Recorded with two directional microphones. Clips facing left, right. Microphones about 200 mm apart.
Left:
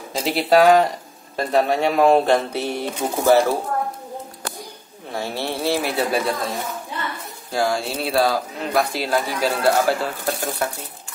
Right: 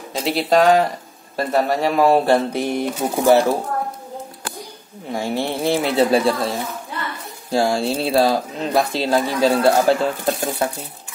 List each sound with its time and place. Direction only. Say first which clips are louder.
0.1 s speech: even; centre (ahead or behind)
5.1 s speech: right 4 dB; 15° right (ahead or behind)
7.5 s speech: right 4 dB; 25° right (ahead or behind)